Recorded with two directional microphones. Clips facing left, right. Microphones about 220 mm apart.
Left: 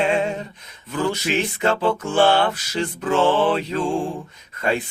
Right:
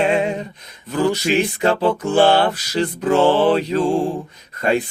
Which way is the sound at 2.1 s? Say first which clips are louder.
Right 3 dB; 35° right (ahead or behind).